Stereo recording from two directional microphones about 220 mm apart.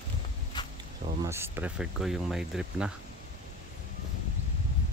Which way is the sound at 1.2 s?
10° right (ahead or behind).